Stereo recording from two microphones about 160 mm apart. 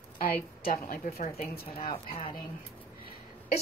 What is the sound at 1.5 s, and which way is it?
Speech, 70° left (ahead or behind).